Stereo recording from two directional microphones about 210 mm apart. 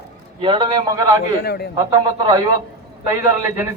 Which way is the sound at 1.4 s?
50° left (ahead or behind).